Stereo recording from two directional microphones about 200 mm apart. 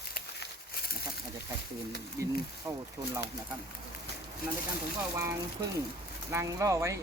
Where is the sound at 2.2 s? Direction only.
15° right (ahead or behind).